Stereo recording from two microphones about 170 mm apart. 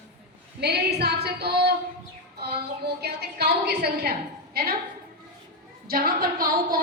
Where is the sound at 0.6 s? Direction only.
75° right (ahead or behind).